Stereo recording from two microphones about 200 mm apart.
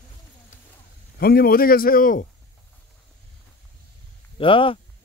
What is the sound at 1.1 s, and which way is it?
Speech, 50° left (ahead or behind).